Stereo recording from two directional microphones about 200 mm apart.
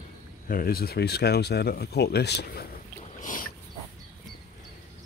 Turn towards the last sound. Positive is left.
turn(degrees=40)  # may be behind; listen again after turning